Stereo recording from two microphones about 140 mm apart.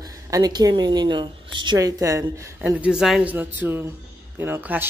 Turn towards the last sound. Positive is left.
turn(degrees=-15)  # may be behind; listen again after turning